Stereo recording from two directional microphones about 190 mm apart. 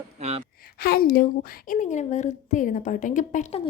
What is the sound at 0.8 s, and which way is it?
A woman's voice, 50° left (ahead or behind).